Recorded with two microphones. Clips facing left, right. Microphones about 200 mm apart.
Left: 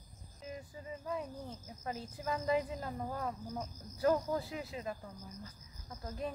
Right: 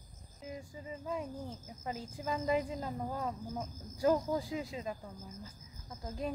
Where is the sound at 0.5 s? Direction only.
15° right (ahead or behind).